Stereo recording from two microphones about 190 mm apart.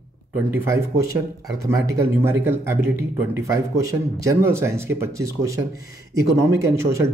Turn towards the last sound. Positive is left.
turn(degrees=-15)  # may be behind; listen again after turning